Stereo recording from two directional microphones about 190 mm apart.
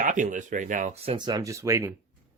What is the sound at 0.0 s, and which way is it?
Speech, 45° right (ahead or behind).